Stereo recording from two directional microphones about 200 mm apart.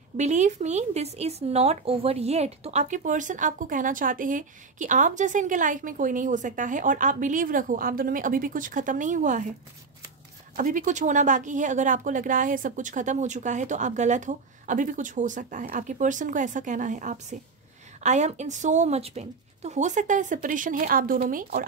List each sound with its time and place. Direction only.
0.2 s speech: 35° right (ahead or behind)
10.5 s speech: 40° right (ahead or behind)